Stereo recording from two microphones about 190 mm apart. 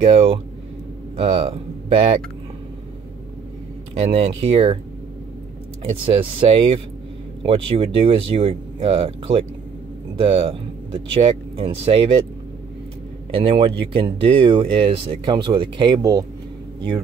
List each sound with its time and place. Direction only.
0.0 s speech: 30° right (ahead or behind)
4.1 s speech: 30° right (ahead or behind)
6.0 s speech: 30° right (ahead or behind)
13.3 s speech: 25° right (ahead or behind)